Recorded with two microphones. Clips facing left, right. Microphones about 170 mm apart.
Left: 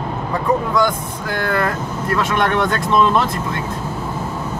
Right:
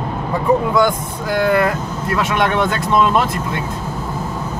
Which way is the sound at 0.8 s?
15° right (ahead or behind).